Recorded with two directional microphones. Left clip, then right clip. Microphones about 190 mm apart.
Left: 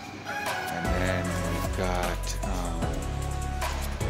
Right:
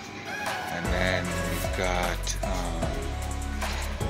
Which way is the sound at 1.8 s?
20° left (ahead or behind).